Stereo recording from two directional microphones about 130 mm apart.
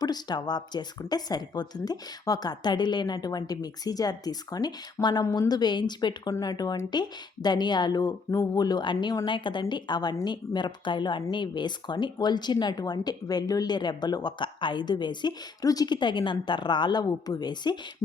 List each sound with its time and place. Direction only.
0.0 s speech: 30° left (ahead or behind)